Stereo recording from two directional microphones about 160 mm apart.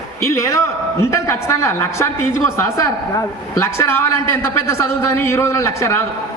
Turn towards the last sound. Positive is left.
turn(degrees=20)  # may be behind; listen again after turning